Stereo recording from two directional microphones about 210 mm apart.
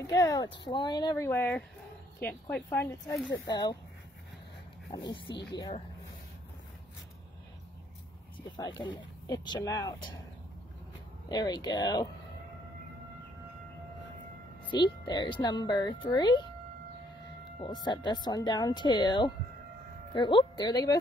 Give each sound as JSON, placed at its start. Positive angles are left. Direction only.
{"t": 0.0, "sound": "speech", "side_deg": 15}
{"t": 3.4, "sound": "speech", "side_deg": 20}
{"t": 4.9, "sound": "speech", "side_deg": 20}
{"t": 8.4, "sound": "speech", "side_deg": 20}
{"t": 11.2, "sound": "speech", "side_deg": 20}
{"t": 14.7, "sound": "speech", "side_deg": 20}
{"t": 17.6, "sound": "speech", "side_deg": 20}